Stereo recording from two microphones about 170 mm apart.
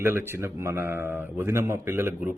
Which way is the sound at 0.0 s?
15° right (ahead or behind).